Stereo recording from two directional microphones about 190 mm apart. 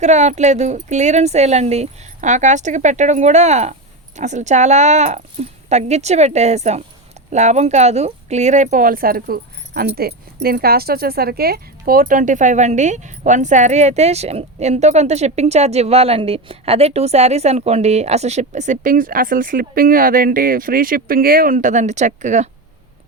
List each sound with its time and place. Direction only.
0.0 s speech: 40° right (ahead or behind)